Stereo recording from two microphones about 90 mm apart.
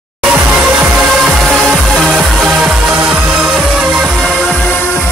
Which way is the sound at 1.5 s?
Centre (ahead or behind).